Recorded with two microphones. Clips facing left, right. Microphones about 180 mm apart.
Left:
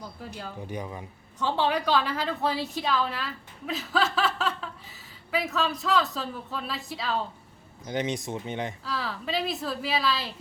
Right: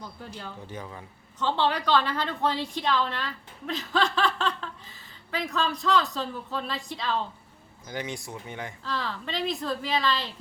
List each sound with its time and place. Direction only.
0.3 s a woman's voice: 10° left (ahead or behind)
7.9 s speech: 20° left (ahead or behind)
8.8 s a woman's voice: 5° left (ahead or behind)